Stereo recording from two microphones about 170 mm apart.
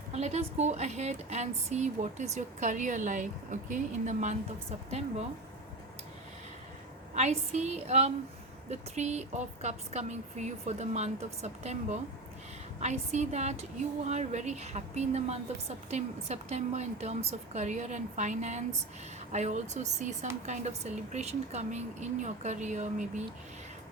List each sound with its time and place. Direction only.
0.1 s a woman's voice: 40° right (ahead or behind)
7.1 s a woman's voice: 40° right (ahead or behind)